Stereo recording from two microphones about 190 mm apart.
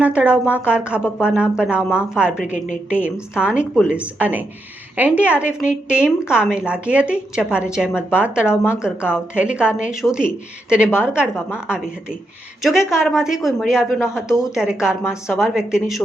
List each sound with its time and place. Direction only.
0.0 s a woman's voice: 5° right (ahead or behind)